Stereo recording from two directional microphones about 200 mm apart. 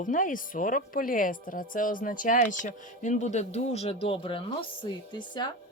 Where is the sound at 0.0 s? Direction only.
40° left (ahead or behind).